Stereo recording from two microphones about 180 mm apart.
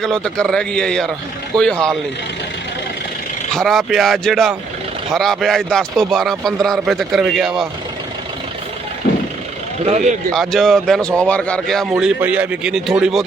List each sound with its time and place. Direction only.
0.0 s a man's voice: 5° left (ahead or behind)
3.5 s a man's voice: centre (ahead or behind)
9.8 s speech: 35° right (ahead or behind)
10.3 s a man's voice: centre (ahead or behind)